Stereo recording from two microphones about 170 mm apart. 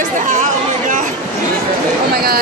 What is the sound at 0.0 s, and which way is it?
Chatter, 50° right (ahead or behind).